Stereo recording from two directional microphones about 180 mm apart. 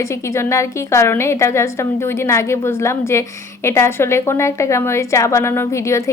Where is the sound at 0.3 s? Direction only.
15° left (ahead or behind).